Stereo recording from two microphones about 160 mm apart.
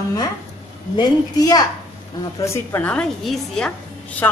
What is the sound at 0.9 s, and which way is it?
A woman's voice, 25° left (ahead or behind).